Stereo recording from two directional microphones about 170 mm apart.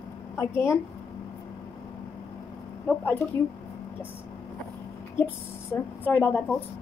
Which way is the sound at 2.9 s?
10° left (ahead or behind).